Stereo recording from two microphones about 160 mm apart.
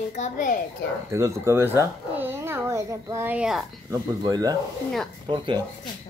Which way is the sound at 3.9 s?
25° right (ahead or behind).